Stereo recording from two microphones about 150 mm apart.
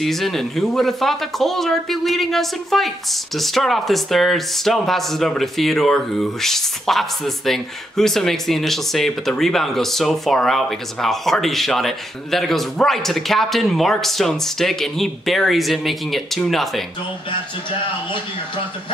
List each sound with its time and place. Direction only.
0.0 s speech: centre (ahead or behind)